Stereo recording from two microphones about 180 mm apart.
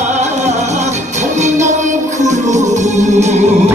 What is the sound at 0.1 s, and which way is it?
Music, 40° right (ahead or behind).